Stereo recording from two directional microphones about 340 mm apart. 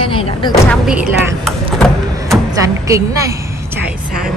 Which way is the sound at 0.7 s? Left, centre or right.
Centre.